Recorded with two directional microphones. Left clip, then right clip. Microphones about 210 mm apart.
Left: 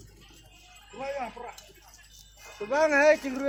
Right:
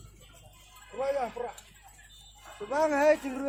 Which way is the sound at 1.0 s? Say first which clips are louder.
Right 4 dB; 50° right (ahead or behind).